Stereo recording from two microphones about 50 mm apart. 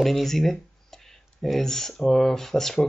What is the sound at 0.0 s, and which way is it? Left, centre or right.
Speech, centre.